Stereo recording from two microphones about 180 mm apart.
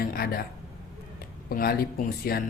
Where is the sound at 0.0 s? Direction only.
55° left (ahead or behind).